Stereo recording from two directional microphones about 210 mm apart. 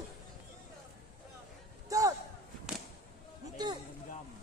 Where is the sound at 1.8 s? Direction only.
15° right (ahead or behind).